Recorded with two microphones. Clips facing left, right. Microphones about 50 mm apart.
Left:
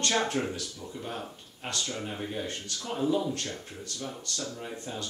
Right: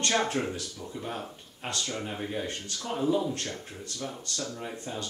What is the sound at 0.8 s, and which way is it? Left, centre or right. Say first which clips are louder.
Speech: right 2 dB; centre.